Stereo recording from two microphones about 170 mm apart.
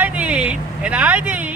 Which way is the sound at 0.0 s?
10° right (ahead or behind).